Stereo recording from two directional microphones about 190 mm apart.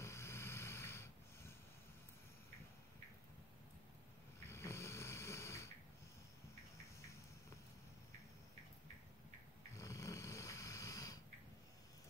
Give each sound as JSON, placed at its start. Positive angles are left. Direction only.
{"t": 0.0, "sound": "snoring", "side_deg": 15}
{"t": 4.5, "sound": "snoring", "side_deg": 15}
{"t": 7.0, "sound": "a sound", "side_deg": 15}
{"t": 9.8, "sound": "snoring", "side_deg": 15}